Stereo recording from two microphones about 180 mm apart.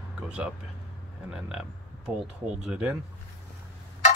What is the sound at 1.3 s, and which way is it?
Speech, 5° right (ahead or behind).